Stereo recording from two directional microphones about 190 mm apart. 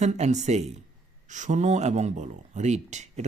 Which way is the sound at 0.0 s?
35° right (ahead or behind).